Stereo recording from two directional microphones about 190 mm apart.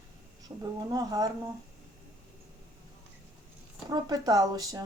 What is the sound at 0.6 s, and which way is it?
Speech, 20° right (ahead or behind).